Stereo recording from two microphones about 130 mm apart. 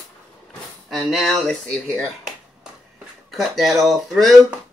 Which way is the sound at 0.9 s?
Centre (ahead or behind).